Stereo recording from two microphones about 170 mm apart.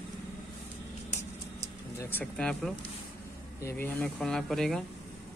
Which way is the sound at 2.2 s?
5° left (ahead or behind).